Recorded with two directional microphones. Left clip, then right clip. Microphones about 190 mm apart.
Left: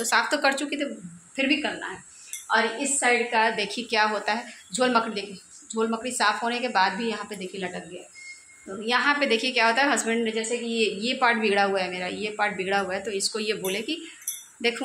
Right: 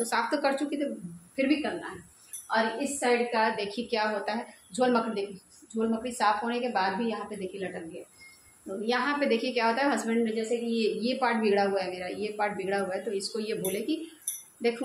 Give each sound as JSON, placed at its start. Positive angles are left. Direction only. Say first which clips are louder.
{"t": 0.0, "sound": "a woman's voice", "louder": "left 5 dB", "side_deg": 5}
{"t": 8.8, "sound": "a woman's voice", "louder": "left 5 dB", "side_deg": 5}